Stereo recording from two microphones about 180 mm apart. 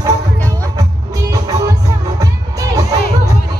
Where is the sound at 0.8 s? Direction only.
20° right (ahead or behind).